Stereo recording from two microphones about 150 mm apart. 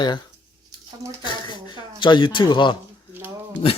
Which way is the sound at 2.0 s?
30° left (ahead or behind).